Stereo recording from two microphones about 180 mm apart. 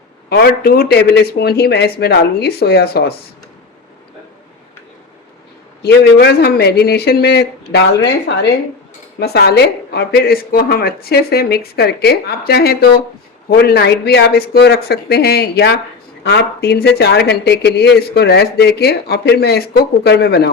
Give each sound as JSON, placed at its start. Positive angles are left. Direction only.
{"t": 0.3, "sound": "speech", "side_deg": 55}
{"t": 5.8, "sound": "speech", "side_deg": 65}
{"t": 9.1, "sound": "speech", "side_deg": 60}